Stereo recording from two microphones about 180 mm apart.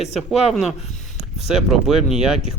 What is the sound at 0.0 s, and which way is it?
Speech, centre (ahead or behind).